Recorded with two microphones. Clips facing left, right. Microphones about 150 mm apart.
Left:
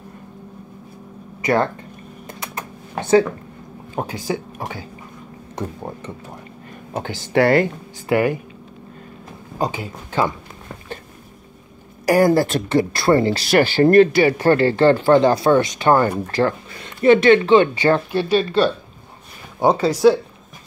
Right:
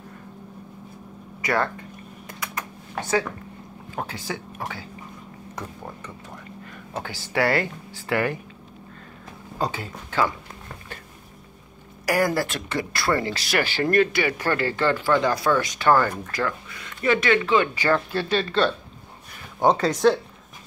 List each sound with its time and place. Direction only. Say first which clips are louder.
1.4 s speech: left 6 dB; 25° left (ahead or behind)
2.2 s computer keyboard: left 2 dB; 25° left (ahead or behind)
3.9 s speech: left 7 dB; 15° left (ahead or behind)
9.6 s speech: left 4 dB; 15° left (ahead or behind)
12.1 s speech: left 8 dB; 30° left (ahead or behind)
18.3 s speech: left 5 dB; 10° left (ahead or behind)